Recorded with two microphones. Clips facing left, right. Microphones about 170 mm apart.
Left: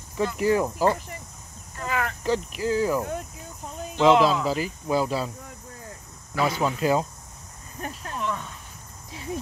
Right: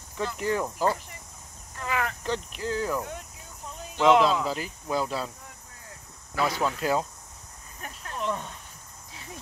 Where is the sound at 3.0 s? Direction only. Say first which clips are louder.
Left 5 dB; 45° left (ahead or behind).